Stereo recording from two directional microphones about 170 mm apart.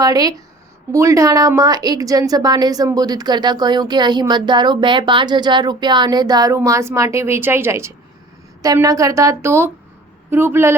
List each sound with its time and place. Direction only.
0.0 s a woman's voice: 20° right (ahead or behind)